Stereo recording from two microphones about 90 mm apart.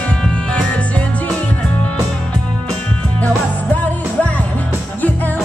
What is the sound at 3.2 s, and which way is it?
Music, 15° left (ahead or behind).